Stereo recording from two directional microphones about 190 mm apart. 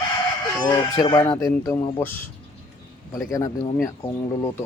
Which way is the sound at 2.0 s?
10° left (ahead or behind).